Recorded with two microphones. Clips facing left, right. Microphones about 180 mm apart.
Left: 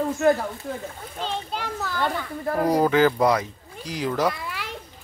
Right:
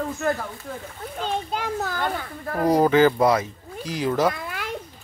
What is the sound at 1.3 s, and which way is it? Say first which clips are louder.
Speech: right 4 dB; 50° right (ahead or behind).